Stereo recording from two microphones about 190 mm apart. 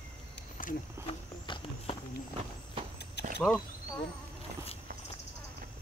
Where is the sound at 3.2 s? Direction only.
60° left (ahead or behind).